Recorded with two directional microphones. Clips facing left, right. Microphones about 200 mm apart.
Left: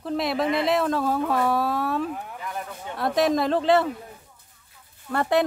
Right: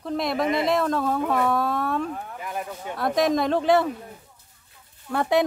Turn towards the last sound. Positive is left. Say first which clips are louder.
# even
turn(degrees=0)  # may be behind; listen again after turning